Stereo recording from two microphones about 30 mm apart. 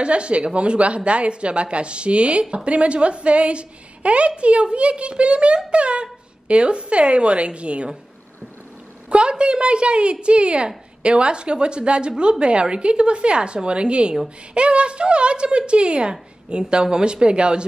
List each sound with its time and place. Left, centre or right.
0.0 s a woman's voice: right
9.1 s a woman's voice: right